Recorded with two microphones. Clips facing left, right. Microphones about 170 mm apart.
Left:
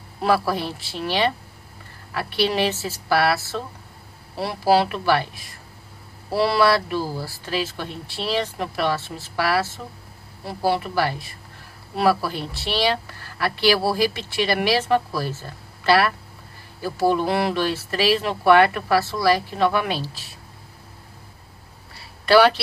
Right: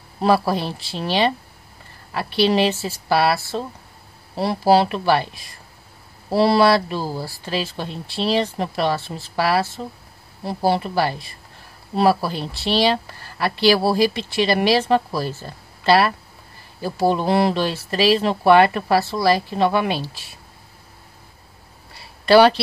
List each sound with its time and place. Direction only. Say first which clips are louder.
0.2 s speech: right 3 dB; 30° right (ahead or behind)
6.3 s speech: right 3 dB; 30° right (ahead or behind)